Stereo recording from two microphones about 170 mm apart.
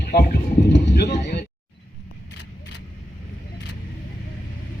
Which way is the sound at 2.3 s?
90° left.